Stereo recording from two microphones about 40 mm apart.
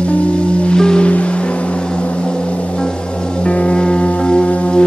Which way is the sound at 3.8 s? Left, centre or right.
Left.